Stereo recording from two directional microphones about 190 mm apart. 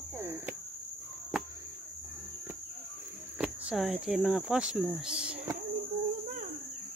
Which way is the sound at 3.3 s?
5° right (ahead or behind).